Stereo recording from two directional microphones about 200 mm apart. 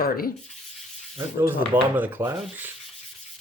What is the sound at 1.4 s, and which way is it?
Speech, 10° right (ahead or behind).